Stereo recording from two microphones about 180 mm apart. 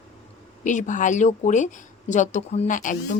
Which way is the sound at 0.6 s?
45° left (ahead or behind).